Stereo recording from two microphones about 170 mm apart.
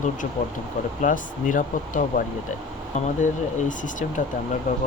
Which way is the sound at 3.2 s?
50° left (ahead or behind).